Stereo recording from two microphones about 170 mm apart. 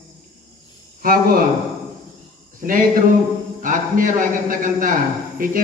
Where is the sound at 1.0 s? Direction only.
55° right (ahead or behind).